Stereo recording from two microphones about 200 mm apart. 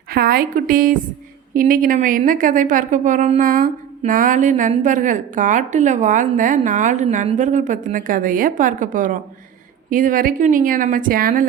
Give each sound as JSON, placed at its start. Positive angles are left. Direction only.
{"t": 0.1, "sound": "a woman's voice", "side_deg": -50}